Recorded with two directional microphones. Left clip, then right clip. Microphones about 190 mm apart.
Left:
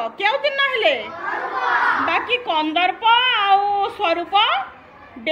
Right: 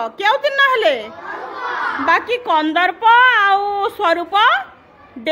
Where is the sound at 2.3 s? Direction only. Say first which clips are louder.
Right 3 dB; 45° right (ahead or behind).